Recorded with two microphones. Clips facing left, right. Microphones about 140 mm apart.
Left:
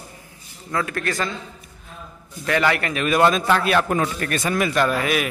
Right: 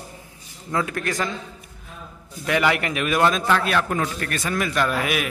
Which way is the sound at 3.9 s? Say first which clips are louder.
Left 3 dB; 20° left (ahead or behind).